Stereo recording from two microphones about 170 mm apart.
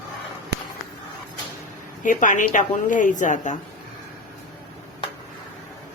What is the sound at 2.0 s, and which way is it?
Speech, 50° left (ahead or behind).